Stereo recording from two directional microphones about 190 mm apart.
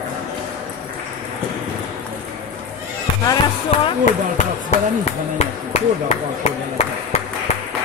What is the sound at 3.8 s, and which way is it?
Speech, 35° left (ahead or behind).